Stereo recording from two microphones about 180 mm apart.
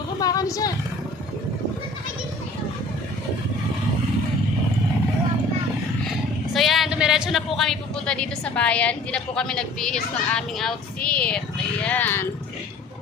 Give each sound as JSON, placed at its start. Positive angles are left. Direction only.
{"t": 0.2, "sound": "vehicle", "side_deg": 20}
{"t": 6.5, "sound": "speech", "side_deg": 0}